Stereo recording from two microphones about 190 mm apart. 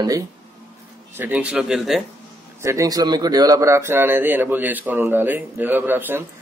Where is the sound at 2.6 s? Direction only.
15° right (ahead or behind).